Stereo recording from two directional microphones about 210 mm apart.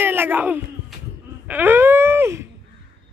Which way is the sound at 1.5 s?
10° right (ahead or behind).